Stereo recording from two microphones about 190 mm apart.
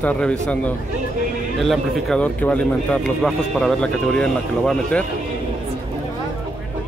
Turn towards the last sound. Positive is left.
turn(degrees=5)  # may be behind; listen again after turning